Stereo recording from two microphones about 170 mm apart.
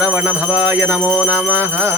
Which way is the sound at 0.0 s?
10° right (ahead or behind).